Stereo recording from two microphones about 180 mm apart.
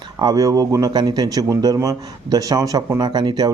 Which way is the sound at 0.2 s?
20° right (ahead or behind).